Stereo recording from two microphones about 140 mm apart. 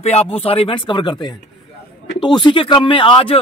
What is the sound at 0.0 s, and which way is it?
A man's voice, 50° left (ahead or behind).